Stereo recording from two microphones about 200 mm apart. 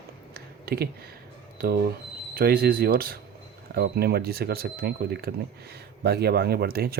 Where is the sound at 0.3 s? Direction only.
50° right (ahead or behind).